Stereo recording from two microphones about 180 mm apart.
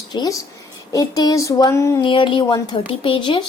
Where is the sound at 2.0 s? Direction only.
25° left (ahead or behind).